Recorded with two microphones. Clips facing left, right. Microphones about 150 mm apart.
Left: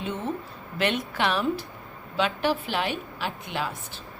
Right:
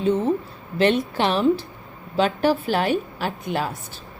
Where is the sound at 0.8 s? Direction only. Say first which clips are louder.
Right 7 dB; 30° right (ahead or behind).